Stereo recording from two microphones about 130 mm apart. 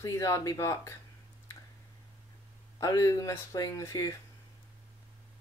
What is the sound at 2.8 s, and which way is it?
Speech, 25° left (ahead or behind).